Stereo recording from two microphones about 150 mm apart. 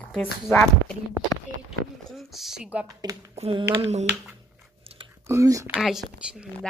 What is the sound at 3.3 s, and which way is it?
Speech, 40° right (ahead or behind).